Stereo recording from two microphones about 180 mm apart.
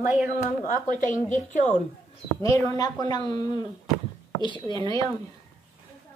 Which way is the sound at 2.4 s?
15° left (ahead or behind).